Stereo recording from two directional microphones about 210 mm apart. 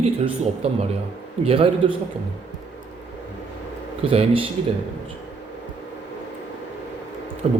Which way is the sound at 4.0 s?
25° right (ahead or behind).